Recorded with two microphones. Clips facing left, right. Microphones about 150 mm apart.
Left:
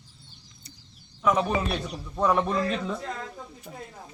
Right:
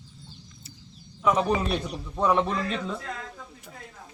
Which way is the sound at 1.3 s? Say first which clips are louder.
Right 1 dB; centre (ahead or behind).